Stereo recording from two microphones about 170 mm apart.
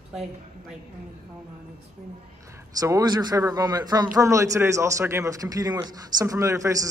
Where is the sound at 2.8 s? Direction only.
20° right (ahead or behind).